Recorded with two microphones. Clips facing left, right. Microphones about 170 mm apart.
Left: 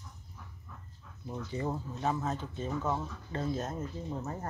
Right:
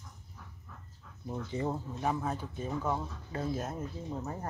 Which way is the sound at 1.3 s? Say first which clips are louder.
Right 1 dB; 20° right (ahead or behind).